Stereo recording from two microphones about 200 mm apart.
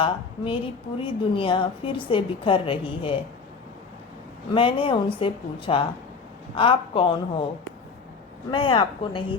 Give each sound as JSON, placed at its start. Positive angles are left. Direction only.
{"t": 0.0, "sound": "a woman's voice", "side_deg": 25}
{"t": 4.5, "sound": "a woman's voice", "side_deg": 25}
{"t": 8.4, "sound": "a woman's voice", "side_deg": 25}